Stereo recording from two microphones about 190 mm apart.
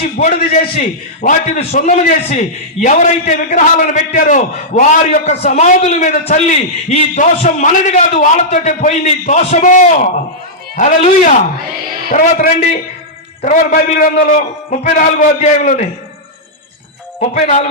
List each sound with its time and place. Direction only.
0.2 s a man's voice: 45° left (ahead or behind)
17.2 s a man's voice: 35° left (ahead or behind)